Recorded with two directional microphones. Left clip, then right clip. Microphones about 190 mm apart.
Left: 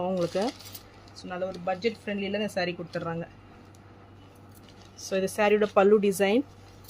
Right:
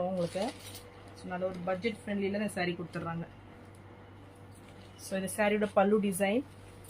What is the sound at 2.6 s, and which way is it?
Speech, 50° left (ahead or behind).